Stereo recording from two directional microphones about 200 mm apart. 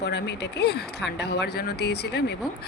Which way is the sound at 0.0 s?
60° left (ahead or behind).